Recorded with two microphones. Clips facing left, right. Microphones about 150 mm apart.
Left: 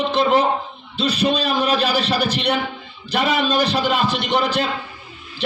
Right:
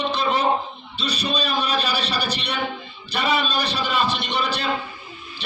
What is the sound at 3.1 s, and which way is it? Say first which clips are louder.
A man's voice: left 4 dB; 90° left.